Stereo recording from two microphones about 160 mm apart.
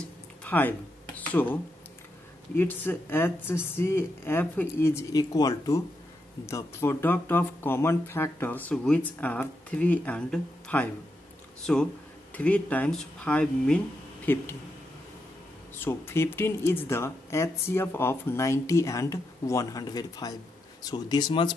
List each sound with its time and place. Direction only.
0.4 s a sound: 10° left (ahead or behind)
2.5 s speech: 10° left (ahead or behind)
15.7 s speech: 15° left (ahead or behind)